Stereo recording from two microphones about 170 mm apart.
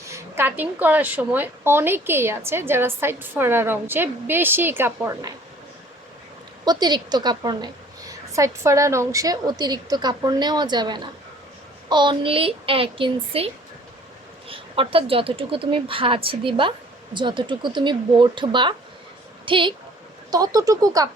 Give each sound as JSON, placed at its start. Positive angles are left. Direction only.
{"t": 0.0, "sound": "speech", "side_deg": -15}
{"t": 6.7, "sound": "a woman's voice", "side_deg": -25}